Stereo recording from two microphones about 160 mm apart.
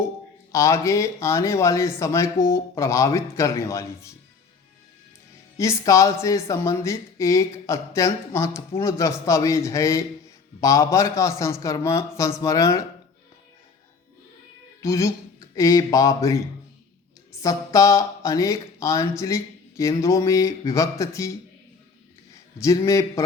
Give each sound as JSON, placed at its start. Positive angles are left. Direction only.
{"t": 0.5, "sound": "speech", "side_deg": 20}
{"t": 5.5, "sound": "speech", "side_deg": 20}
{"t": 14.8, "sound": "speech", "side_deg": 20}
{"t": 17.4, "sound": "speech", "side_deg": 20}
{"t": 22.6, "sound": "speech", "side_deg": 20}